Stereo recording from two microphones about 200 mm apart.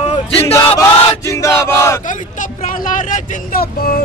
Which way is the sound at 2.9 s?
45° left (ahead or behind).